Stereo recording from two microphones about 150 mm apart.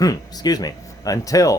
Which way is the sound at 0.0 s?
25° left (ahead or behind).